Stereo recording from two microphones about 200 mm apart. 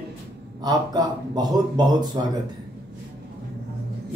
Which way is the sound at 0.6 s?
20° right (ahead or behind).